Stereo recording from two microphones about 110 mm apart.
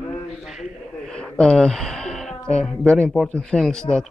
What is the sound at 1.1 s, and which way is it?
Speech, 5° left (ahead or behind).